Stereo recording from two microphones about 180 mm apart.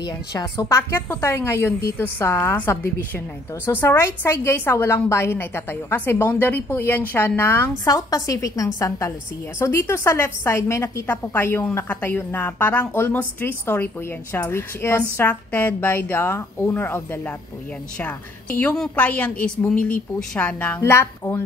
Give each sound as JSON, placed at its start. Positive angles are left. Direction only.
{"t": 0.0, "sound": "a woman's voice", "side_deg": 20}